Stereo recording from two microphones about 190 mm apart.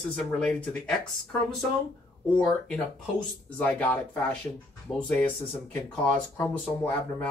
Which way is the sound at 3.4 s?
10° left (ahead or behind).